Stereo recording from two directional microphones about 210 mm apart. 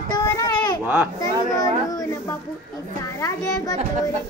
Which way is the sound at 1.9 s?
15° left (ahead or behind).